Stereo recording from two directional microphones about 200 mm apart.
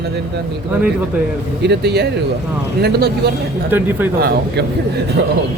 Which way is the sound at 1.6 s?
55° right (ahead or behind).